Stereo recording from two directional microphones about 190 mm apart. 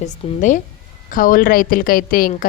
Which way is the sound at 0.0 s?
40° left (ahead or behind).